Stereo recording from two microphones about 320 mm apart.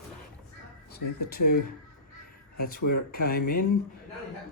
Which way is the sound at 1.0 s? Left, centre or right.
Left.